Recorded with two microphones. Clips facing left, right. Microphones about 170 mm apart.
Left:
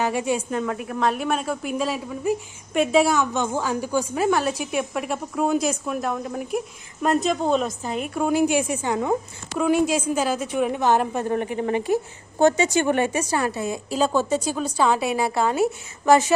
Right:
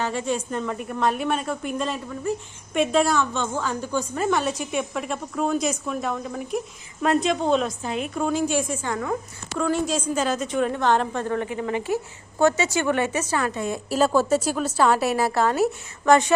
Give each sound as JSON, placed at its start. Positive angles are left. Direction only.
{"t": 0.0, "sound": "a woman's voice", "side_deg": 10}
{"t": 11.3, "sound": "a woman's voice", "side_deg": 20}
{"t": 13.7, "sound": "a woman's voice", "side_deg": -5}